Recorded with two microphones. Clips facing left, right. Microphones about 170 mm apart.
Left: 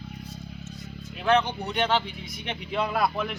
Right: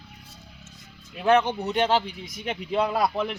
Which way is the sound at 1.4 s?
40° right (ahead or behind).